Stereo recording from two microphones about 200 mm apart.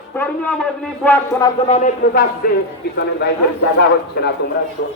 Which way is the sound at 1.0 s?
10° left (ahead or behind).